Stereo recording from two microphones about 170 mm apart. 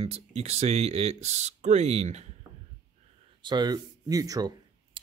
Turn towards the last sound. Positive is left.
turn(degrees=-20)  # may be behind; listen again after turning